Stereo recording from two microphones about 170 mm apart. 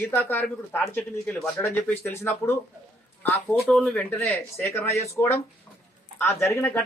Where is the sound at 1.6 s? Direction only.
15° left (ahead or behind).